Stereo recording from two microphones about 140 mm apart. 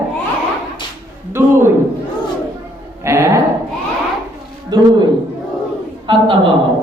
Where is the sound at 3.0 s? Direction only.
20° right (ahead or behind).